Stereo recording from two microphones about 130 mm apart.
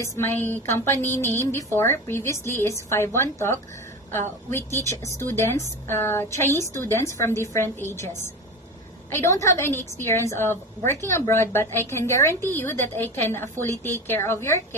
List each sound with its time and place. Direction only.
0.0 s a woman's voice: 20° left (ahead or behind)
9.1 s a woman's voice: 25° left (ahead or behind)